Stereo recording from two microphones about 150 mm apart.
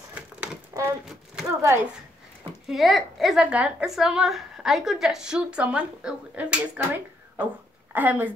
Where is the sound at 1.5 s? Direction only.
20° right (ahead or behind).